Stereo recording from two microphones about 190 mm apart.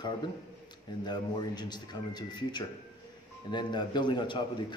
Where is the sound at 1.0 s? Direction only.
20° left (ahead or behind).